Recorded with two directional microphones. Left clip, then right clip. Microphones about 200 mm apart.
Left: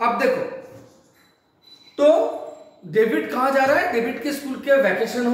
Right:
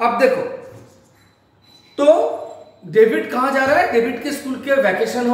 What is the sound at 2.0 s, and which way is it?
A woman's voice, centre (ahead or behind).